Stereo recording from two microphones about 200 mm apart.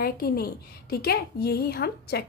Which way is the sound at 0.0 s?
50° left (ahead or behind).